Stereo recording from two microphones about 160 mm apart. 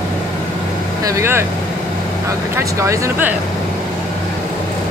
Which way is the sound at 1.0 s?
20° right (ahead or behind).